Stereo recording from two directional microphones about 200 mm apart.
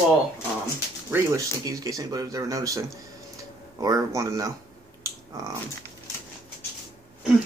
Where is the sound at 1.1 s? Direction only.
15° right (ahead or behind).